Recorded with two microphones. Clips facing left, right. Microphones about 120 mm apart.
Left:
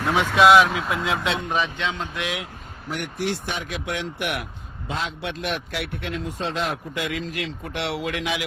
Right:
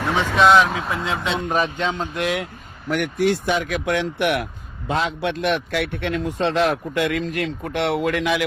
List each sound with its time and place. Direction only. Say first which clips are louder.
0.0 s speech: even; centre (ahead or behind)
1.5 s speech: right 4 dB; 40° right (ahead or behind)
3.2 s speech: right 7 dB; centre (ahead or behind)
3.6 s a man's voice: right 7 dB; 55° right (ahead or behind)